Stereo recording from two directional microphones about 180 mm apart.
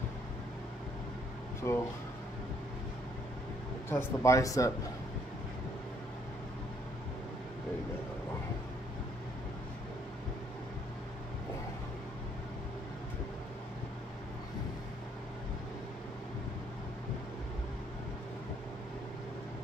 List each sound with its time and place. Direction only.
1.6 s speech: 15° left (ahead or behind)
3.9 s speech: 15° left (ahead or behind)